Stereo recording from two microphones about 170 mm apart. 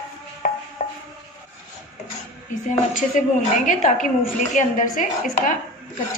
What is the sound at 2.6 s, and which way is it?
A woman's voice, 50° left (ahead or behind).